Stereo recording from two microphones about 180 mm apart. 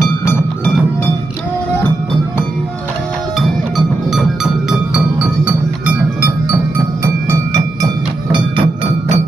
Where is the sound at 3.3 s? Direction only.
Centre (ahead or behind).